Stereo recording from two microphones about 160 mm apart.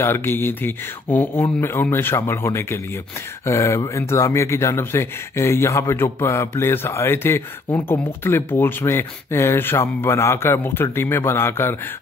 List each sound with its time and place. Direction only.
0.0 s speech: 15° left (ahead or behind)